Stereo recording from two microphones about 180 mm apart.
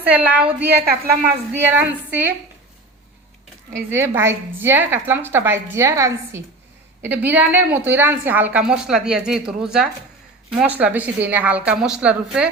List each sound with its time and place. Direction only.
0.1 s a woman's voice: 10° right (ahead or behind)
0.6 s a woman's voice: 60° right (ahead or behind)
1.7 s a woman's voice: 10° right (ahead or behind)
3.9 s a woman's voice: 15° right (ahead or behind)